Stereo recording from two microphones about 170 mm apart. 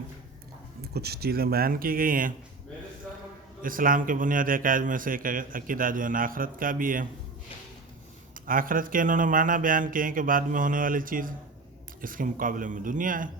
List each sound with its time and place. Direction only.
0.9 s speech: 70° right (ahead or behind)
3.6 s a man's voice: 55° right (ahead or behind)
8.4 s a man's voice: 55° right (ahead or behind)